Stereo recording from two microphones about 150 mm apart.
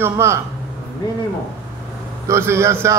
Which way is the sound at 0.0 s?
20° right (ahead or behind).